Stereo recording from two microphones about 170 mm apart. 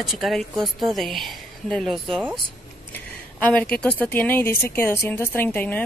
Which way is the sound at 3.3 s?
5° left (ahead or behind).